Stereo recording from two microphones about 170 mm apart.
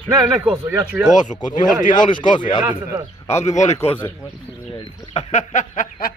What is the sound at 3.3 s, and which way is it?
Speech, 15° left (ahead or behind).